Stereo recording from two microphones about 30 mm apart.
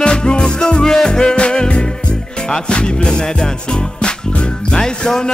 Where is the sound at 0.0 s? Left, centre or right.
Left.